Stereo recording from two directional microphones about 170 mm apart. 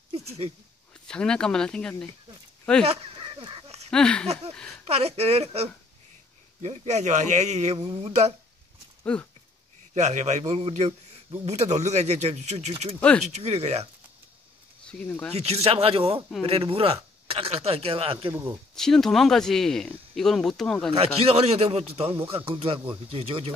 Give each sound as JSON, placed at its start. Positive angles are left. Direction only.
{"t": 0.1, "sound": "a sound", "side_deg": -35}
{"t": 1.0, "sound": "speech", "side_deg": 5}
{"t": 2.8, "sound": "fowl", "side_deg": -35}
{"t": 3.9, "sound": "speech", "side_deg": 5}
{"t": 4.8, "sound": "speech", "side_deg": -35}
{"t": 9.0, "sound": "speech", "side_deg": 5}
{"t": 9.9, "sound": "a man's voice", "side_deg": -45}
{"t": 14.9, "sound": "speech", "side_deg": 5}
{"t": 15.3, "sound": "speech", "side_deg": -40}
{"t": 18.3, "sound": "speech", "side_deg": -15}
{"t": 18.8, "sound": "speech", "side_deg": 5}
{"t": 20.9, "sound": "speech", "side_deg": -35}